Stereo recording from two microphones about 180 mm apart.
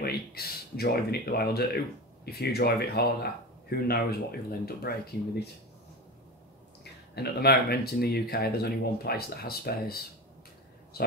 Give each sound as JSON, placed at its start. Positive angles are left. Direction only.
{"t": 0.0, "sound": "speech", "side_deg": 60}
{"t": 6.8, "sound": "speech", "side_deg": 65}